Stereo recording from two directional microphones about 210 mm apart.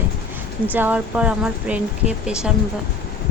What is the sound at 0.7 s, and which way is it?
Speech, 10° right (ahead or behind).